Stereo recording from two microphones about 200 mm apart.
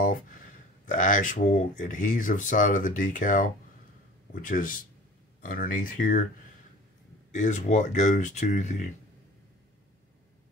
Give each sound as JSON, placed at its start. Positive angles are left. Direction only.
{"t": 0.0, "sound": "a sound", "side_deg": 45}
{"t": 0.8, "sound": "speech", "side_deg": 40}
{"t": 7.3, "sound": "speech", "side_deg": 40}